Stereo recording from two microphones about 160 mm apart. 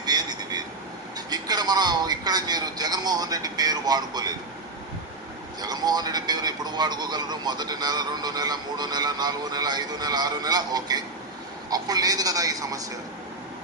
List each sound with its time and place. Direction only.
0.0 s vehicle: 25° right (ahead or behind)
1.3 s a man's voice: 25° right (ahead or behind)
5.6 s a man's voice: 25° right (ahead or behind)